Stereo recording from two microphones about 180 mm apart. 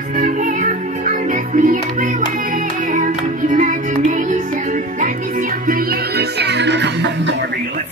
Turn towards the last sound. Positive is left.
turn(degrees=-85)